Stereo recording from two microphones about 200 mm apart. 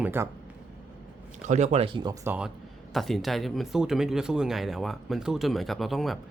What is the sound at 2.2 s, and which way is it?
Speech, 10° right (ahead or behind).